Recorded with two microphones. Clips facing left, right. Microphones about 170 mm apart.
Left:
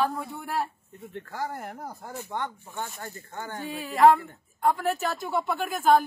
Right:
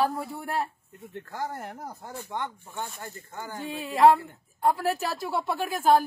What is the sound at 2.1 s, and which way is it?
Speech, 15° right (ahead or behind).